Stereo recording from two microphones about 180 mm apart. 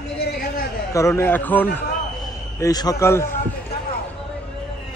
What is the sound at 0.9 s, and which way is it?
Speech, 15° left (ahead or behind).